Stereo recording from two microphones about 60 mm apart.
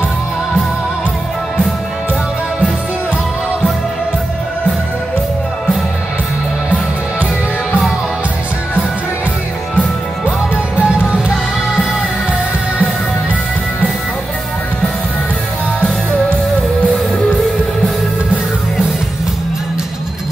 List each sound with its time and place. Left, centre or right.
10.5 s music: centre